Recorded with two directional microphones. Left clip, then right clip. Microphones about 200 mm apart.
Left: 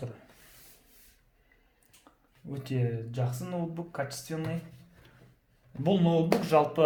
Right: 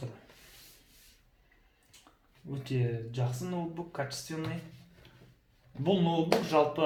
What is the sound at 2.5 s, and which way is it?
Speech, 45° left (ahead or behind).